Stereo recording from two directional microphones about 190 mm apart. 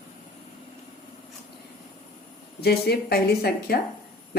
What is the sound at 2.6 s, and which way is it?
Speech, 55° left (ahead or behind).